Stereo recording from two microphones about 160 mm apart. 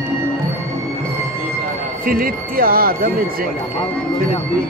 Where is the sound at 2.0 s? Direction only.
65° right (ahead or behind).